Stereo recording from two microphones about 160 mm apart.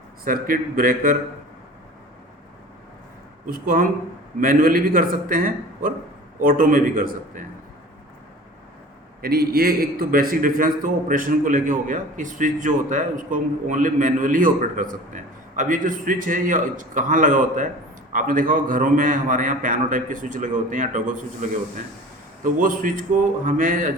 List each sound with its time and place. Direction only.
0.3 s a man's voice: 60° right (ahead or behind)
3.4 s a man's voice: 60° right (ahead or behind)
9.2 s a man's voice: 70° right (ahead or behind)